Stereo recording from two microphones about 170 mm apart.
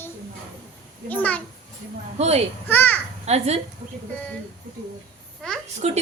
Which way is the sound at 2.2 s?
40° right (ahead or behind).